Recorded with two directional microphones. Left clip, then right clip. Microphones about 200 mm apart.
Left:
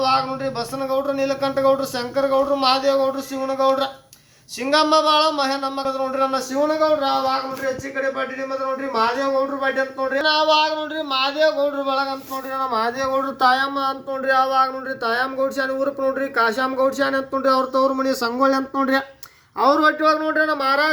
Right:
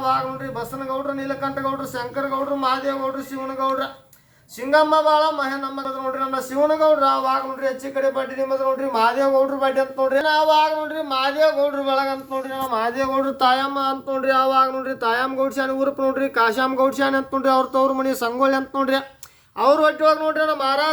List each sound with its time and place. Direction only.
0.0 s a sound: 40° left (ahead or behind)
0.9 s speech: 50° left (ahead or behind); by 6.7 s 30° left (ahead or behind)
8.1 s a man's voice: centre (ahead or behind)